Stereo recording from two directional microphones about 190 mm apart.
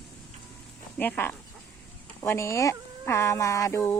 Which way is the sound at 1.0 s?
10° left (ahead or behind).